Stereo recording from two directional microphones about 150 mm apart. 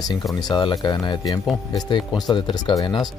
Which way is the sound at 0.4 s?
30° left (ahead or behind).